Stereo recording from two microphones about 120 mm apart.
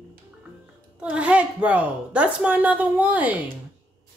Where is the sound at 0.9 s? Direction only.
10° right (ahead or behind).